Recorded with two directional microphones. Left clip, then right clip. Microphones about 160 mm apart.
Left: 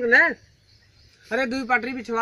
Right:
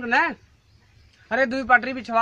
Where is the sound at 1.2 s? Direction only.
30° right (ahead or behind).